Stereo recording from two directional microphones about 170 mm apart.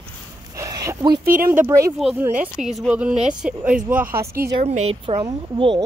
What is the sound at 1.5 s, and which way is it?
Speech, 15° right (ahead or behind).